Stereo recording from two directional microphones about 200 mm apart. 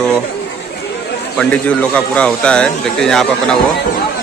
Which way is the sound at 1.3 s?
5° left (ahead or behind).